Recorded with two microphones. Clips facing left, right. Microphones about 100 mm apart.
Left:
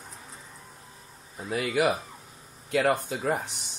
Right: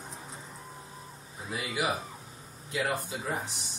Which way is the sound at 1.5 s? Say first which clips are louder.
Left 6 dB; 60° left (ahead or behind).